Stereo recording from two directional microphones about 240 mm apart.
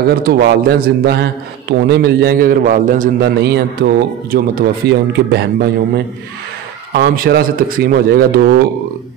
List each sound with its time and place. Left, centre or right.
0.0 s a man's voice: right